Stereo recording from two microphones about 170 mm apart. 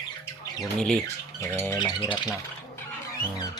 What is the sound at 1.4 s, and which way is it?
Squawk, 15° left (ahead or behind).